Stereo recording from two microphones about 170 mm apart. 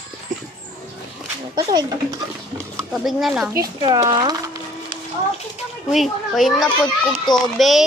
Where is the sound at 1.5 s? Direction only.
20° right (ahead or behind).